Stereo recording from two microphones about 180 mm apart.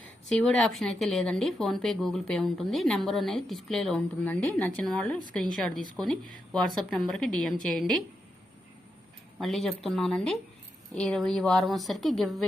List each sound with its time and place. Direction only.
0.3 s speech: centre (ahead or behind)
9.4 s speech: centre (ahead or behind)